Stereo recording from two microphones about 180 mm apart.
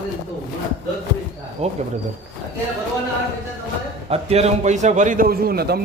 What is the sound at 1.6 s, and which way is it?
Speech, 35° right (ahead or behind).